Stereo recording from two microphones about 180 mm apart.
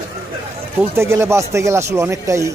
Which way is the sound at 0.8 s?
15° right (ahead or behind).